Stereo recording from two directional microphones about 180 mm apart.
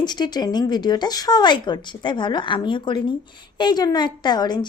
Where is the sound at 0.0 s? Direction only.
25° left (ahead or behind).